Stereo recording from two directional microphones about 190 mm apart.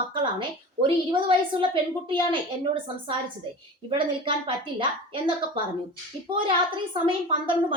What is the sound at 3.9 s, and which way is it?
Speech, 25° right (ahead or behind).